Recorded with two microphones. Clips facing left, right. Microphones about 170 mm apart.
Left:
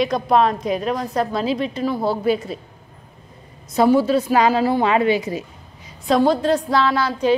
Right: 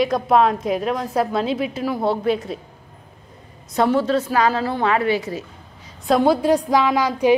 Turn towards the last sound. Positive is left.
turn(degrees=-15)  # may be behind; listen again after turning